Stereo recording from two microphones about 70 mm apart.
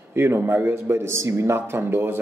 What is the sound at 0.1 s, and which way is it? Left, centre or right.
A man's voice, right.